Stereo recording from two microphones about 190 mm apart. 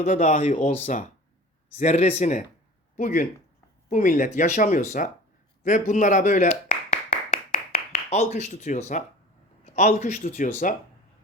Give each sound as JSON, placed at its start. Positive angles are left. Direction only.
{"t": 0.0, "sound": "speech", "side_deg": 40}
{"t": 5.6, "sound": "clapping", "side_deg": 40}
{"t": 9.7, "sound": "speech", "side_deg": 40}